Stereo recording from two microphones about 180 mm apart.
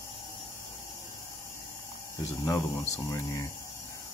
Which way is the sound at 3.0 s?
20° left (ahead or behind).